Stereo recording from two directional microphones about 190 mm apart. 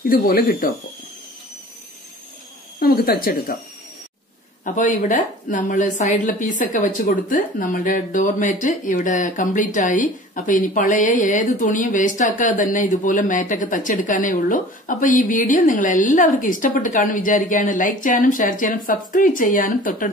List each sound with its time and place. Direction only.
0.0 s a woman's voice: 50° left (ahead or behind)
2.8 s a woman's voice: 50° left (ahead or behind)
4.6 s a woman's voice: 45° left (ahead or behind)